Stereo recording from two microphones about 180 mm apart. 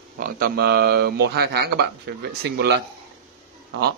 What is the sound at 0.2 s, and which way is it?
A man's voice, 60° right (ahead or behind).